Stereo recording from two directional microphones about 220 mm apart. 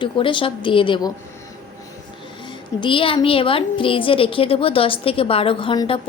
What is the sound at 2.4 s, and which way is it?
A woman's voice, 20° left (ahead or behind).